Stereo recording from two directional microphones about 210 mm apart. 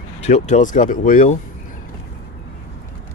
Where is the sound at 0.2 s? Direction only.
35° left (ahead or behind).